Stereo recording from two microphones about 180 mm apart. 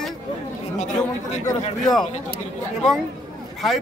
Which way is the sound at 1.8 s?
Centre (ahead or behind).